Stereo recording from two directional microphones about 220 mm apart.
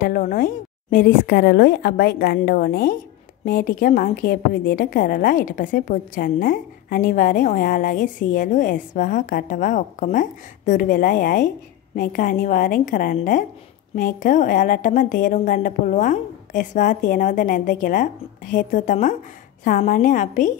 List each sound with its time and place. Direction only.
0.0 s a woman's voice: 40° left (ahead or behind)